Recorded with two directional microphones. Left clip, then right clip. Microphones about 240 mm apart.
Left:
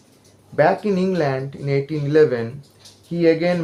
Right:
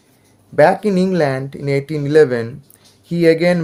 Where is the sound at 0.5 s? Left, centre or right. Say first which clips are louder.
Right 5 dB; right.